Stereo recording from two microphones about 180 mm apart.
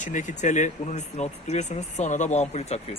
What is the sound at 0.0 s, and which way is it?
Speech, 45° left (ahead or behind).